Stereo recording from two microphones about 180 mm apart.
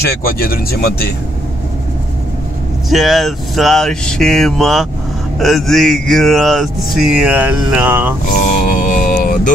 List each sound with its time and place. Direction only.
0.0 s speech: 60° left (ahead or behind)
2.9 s speech: centre (ahead or behind)
8.4 s mantra: 50° left (ahead or behind)